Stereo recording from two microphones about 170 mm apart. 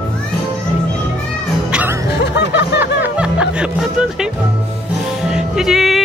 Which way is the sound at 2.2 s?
90° left.